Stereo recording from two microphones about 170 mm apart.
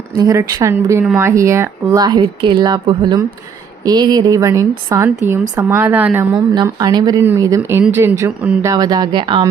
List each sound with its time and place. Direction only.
0.2 s a woman's voice: 20° right (ahead or behind)
6.3 s speech: 25° right (ahead or behind)